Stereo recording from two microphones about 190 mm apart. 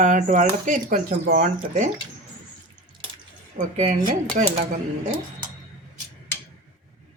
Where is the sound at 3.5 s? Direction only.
35° right (ahead or behind).